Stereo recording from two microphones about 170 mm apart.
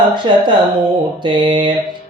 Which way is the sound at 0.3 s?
30° right (ahead or behind).